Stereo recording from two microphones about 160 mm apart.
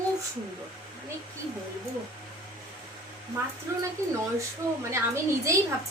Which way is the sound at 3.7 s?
20° right (ahead or behind).